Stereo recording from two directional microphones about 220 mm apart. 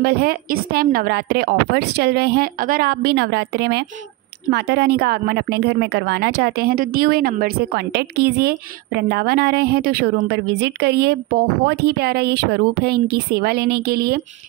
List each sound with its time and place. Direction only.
0.0 s a woman's voice: 45° right (ahead or behind)